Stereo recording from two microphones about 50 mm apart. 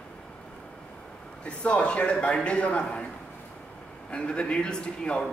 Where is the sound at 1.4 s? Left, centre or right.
Left.